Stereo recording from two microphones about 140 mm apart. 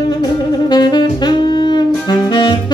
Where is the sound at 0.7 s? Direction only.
30° left (ahead or behind).